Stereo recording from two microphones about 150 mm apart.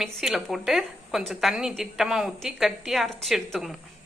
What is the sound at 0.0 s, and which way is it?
A woman's voice, centre (ahead or behind).